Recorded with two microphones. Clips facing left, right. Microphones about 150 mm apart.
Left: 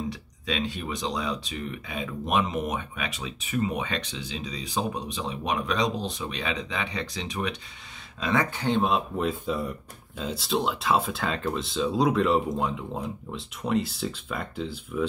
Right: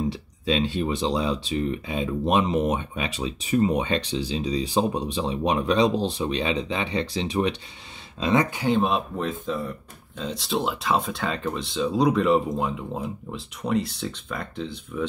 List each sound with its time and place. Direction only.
0.1 s speech: 30° right (ahead or behind)
8.2 s speech: 20° right (ahead or behind); by 9.3 s centre (ahead or behind)
9.3 s speech: 10° left (ahead or behind)